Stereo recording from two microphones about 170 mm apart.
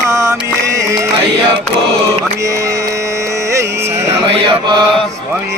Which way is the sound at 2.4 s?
20° right (ahead or behind).